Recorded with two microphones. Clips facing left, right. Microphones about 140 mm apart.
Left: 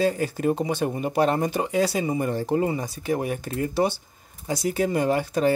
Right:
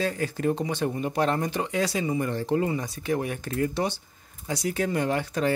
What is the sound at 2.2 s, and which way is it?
Speech, 10° left (ahead or behind).